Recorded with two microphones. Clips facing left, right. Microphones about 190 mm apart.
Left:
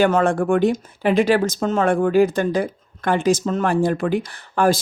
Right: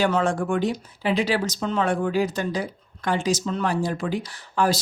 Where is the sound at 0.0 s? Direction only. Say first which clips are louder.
Left 5 dB; 55° left (ahead or behind).